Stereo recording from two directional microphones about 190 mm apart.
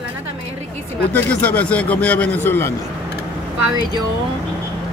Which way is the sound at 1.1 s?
10° left (ahead or behind).